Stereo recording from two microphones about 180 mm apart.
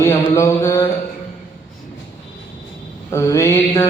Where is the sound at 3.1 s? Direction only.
15° left (ahead or behind).